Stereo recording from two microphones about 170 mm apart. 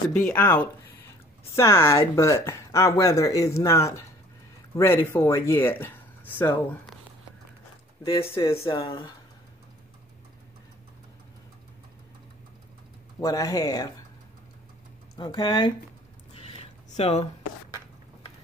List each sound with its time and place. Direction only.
0.1 s speech: 10° left (ahead or behind)
8.6 s speech: 30° left (ahead or behind)
13.2 s speech: 20° left (ahead or behind)
15.1 s speech: 25° left (ahead or behind)
16.3 s a sound: 35° left (ahead or behind)